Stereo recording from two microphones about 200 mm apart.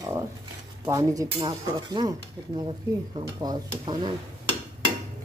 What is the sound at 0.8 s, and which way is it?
Speech, 15° right (ahead or behind).